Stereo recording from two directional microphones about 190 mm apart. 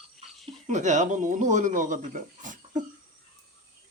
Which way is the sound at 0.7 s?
40° right (ahead or behind).